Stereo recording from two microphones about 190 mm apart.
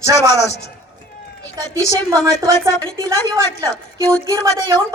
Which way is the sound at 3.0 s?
15° right (ahead or behind).